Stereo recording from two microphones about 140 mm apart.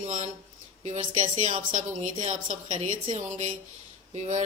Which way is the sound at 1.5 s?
65° right (ahead or behind).